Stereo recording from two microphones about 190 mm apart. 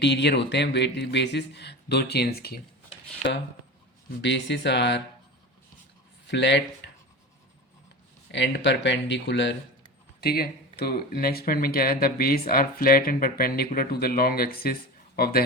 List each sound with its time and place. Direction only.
0.0 s speech: 65° left (ahead or behind)
4.2 s speech: 70° left (ahead or behind)
6.2 s speech: 70° left (ahead or behind)
8.3 s speech: 70° left (ahead or behind)
10.2 s speech: 55° left (ahead or behind)